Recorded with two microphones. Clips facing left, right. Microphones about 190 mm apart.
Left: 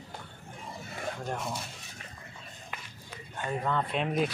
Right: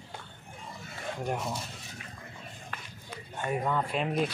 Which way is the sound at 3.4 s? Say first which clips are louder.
Right 1 dB; 10° right (ahead or behind).